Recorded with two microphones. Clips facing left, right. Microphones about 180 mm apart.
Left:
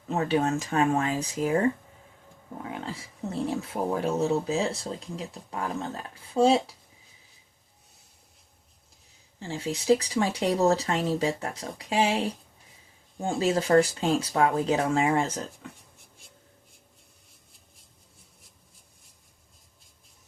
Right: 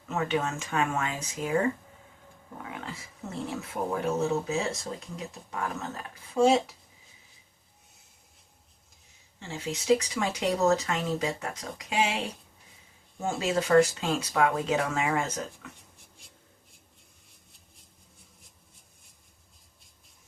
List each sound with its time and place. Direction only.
0.1 s speech: 35° left (ahead or behind)
2.6 s speech: 30° left (ahead or behind)
9.4 s speech: 35° left (ahead or behind)